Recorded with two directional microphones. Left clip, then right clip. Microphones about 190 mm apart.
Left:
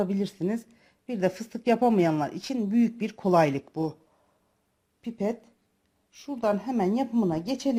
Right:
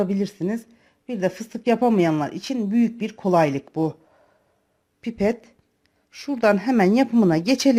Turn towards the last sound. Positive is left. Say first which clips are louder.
# right 9 dB
turn(degrees=-30)  # may be behind; listen again after turning